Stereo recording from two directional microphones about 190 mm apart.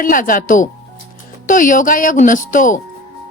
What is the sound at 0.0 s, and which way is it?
Speech, 45° left (ahead or behind).